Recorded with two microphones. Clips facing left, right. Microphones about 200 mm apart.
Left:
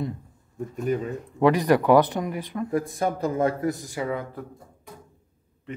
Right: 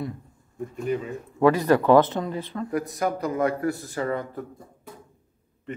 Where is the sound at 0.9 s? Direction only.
45° left (ahead or behind).